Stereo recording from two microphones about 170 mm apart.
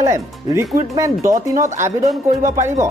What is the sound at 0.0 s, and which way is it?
Speech, 20° right (ahead or behind).